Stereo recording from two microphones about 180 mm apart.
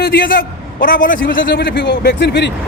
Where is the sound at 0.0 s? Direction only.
55° left (ahead or behind); by 2.5 s 75° left (ahead or behind).